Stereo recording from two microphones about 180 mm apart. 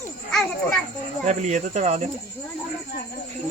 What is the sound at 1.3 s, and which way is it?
Speech, 40° right (ahead or behind).